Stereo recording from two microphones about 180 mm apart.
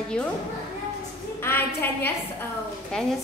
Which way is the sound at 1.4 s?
10° left (ahead or behind).